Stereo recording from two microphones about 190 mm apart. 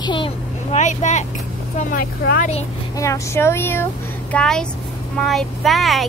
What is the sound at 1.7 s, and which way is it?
Speech, 50° left (ahead or behind).